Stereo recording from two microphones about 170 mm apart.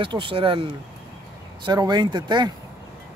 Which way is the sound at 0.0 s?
30° right (ahead or behind).